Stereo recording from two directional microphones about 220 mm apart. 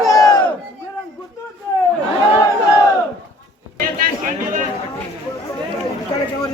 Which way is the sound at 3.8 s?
40° right (ahead or behind).